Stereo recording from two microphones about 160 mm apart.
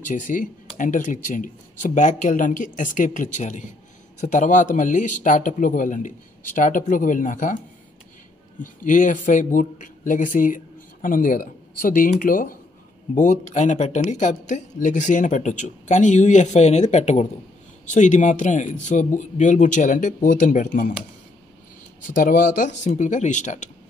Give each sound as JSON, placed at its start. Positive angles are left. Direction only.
{"t": 0.0, "sound": "speech", "side_deg": 55}
{"t": 8.8, "sound": "speech", "side_deg": 55}
{"t": 22.0, "sound": "speech", "side_deg": 55}